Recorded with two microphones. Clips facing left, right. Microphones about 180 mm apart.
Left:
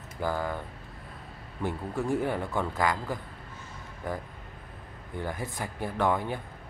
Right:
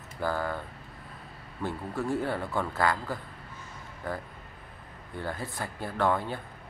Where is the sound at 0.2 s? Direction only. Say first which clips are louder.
Even; 15° left (ahead or behind).